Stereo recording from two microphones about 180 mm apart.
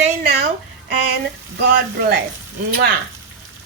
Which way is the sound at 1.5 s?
60° right (ahead or behind).